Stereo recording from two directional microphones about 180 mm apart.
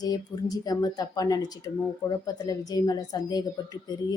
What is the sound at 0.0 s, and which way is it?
A woman's voice, 20° left (ahead or behind).